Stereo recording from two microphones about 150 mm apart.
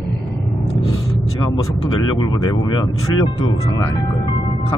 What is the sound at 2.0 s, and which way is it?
Speech, 30° left (ahead or behind).